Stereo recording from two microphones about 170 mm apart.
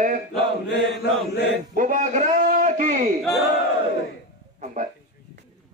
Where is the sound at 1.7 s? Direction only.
50° right (ahead or behind).